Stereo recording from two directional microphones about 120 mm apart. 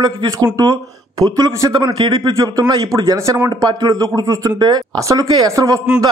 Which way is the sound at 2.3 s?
35° right (ahead or behind).